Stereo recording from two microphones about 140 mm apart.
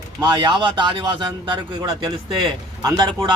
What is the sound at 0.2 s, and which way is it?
A man's voice, 30° right (ahead or behind).